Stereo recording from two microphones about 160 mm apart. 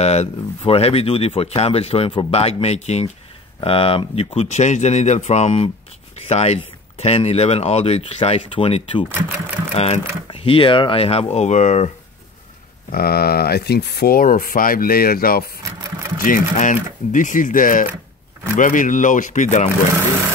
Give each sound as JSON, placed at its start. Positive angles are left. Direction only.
{"t": 0.0, "sound": "speech", "side_deg": 40}
{"t": 12.9, "sound": "speech", "side_deg": 70}